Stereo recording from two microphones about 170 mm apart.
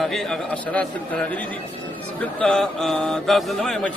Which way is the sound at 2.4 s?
5° left (ahead or behind).